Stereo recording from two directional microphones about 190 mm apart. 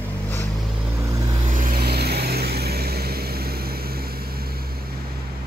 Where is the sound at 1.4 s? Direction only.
45° right (ahead or behind).